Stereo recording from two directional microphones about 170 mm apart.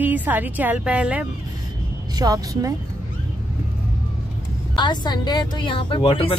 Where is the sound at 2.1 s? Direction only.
20° right (ahead or behind).